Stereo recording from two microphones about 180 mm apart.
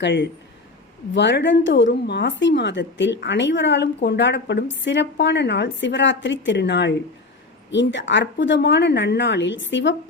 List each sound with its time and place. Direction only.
0.0 s a woman's voice: 80° left